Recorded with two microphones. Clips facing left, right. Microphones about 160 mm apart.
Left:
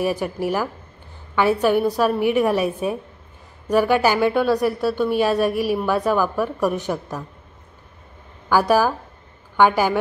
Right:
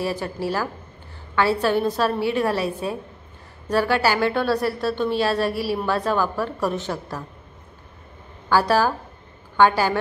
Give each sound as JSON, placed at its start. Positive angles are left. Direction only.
{"t": 0.0, "sound": "speech", "side_deg": 15}
{"t": 8.5, "sound": "speech", "side_deg": 15}